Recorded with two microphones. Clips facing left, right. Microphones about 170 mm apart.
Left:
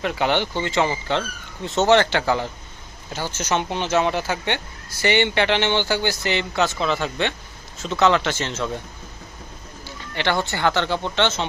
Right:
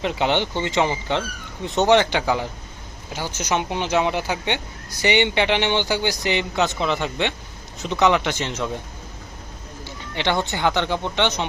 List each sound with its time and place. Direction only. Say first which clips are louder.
0.0 s speech: even; 20° right (ahead or behind)
10.2 s speech: even; 20° right (ahead or behind)